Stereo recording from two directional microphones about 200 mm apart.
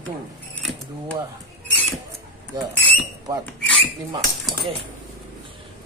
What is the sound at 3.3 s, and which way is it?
Speech, 20° right (ahead or behind).